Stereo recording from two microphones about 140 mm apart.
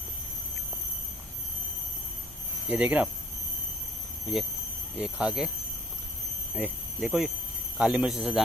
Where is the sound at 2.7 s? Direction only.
10° right (ahead or behind).